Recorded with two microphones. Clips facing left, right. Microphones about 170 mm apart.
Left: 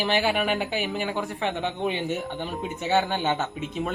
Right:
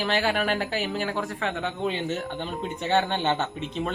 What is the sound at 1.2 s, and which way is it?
Speech, 20° left (ahead or behind).